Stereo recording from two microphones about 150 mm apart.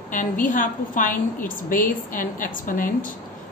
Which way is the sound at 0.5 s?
65° left (ahead or behind).